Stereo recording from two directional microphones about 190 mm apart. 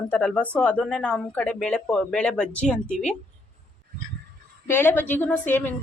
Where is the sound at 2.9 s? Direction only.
40° left (ahead or behind).